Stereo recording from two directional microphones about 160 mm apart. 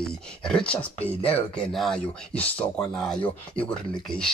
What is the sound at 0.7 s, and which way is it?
Speech, 10° left (ahead or behind).